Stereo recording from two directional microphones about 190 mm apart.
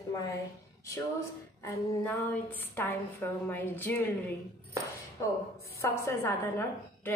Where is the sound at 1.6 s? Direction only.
15° left (ahead or behind).